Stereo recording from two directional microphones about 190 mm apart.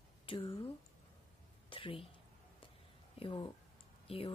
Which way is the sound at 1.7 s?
30° left (ahead or behind).